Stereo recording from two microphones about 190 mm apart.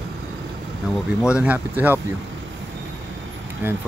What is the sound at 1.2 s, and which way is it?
Speech, 5° right (ahead or behind).